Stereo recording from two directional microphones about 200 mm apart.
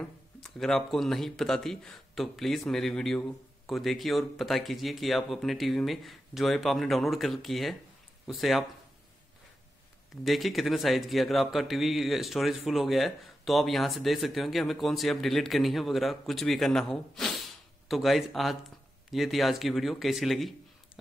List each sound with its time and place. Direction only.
0.0 s speech: 5° left (ahead or behind)
10.2 s a man's voice: centre (ahead or behind)